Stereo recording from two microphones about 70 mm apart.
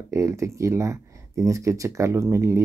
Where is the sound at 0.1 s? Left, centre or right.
Right.